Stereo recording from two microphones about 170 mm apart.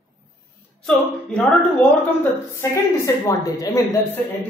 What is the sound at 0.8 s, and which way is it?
Speech, 5° left (ahead or behind).